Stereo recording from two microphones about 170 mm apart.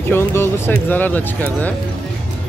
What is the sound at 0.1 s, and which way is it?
Speech, 15° left (ahead or behind).